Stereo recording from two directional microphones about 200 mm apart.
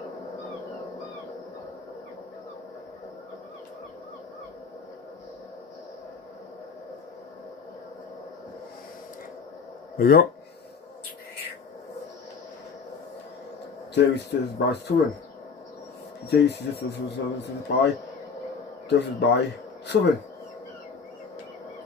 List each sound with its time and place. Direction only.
9.9 s speech: 50° left (ahead or behind)
13.9 s speech: 60° left (ahead or behind)
16.3 s speech: 60° left (ahead or behind)